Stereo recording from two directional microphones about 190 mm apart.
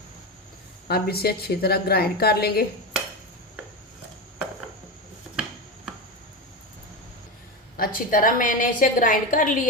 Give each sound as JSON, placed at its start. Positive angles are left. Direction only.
{"t": 0.9, "sound": "a woman's voice", "side_deg": 55}
{"t": 7.8, "sound": "a woman's voice", "side_deg": 45}